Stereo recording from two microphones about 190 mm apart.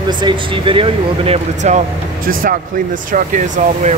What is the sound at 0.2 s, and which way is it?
Speech, 25° right (ahead or behind).